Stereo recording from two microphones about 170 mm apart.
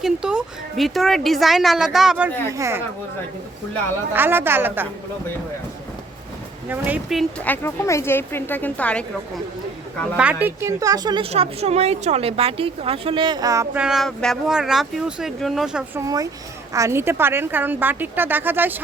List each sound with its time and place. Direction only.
0.0 s speech: 5° right (ahead or behind)
2.5 s speech: 15° right (ahead or behind)
4.1 s speech: 10° right (ahead or behind)
6.7 s speech: 10° right (ahead or behind)
7.4 s speech: 10° left (ahead or behind)
10.4 s a woman's voice: 15° right (ahead or behind)
13.7 s speech: 5° right (ahead or behind)
16.0 s speech: 20° right (ahead or behind)